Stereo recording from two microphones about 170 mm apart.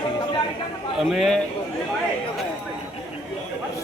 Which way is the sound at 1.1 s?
Centre (ahead or behind).